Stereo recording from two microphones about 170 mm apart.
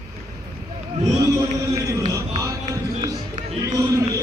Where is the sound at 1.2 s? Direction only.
20° right (ahead or behind).